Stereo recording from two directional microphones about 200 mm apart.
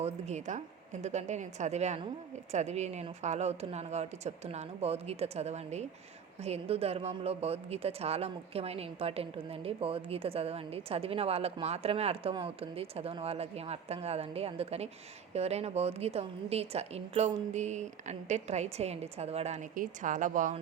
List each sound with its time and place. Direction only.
0.0 s a woman's voice: 35° right (ahead or behind)